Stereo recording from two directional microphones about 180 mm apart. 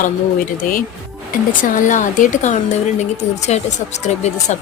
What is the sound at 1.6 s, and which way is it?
Speech, 45° left (ahead or behind).